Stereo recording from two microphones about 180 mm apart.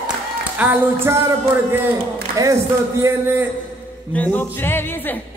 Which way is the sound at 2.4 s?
15° right (ahead or behind).